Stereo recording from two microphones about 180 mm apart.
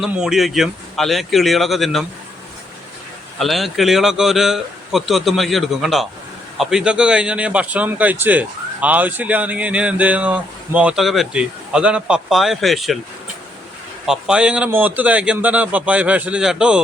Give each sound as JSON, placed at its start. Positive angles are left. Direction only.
{"t": 0.0, "sound": "a man's voice", "side_deg": 0}
{"t": 3.3, "sound": "a man's voice", "side_deg": 0}
{"t": 14.1, "sound": "a man's voice", "side_deg": -5}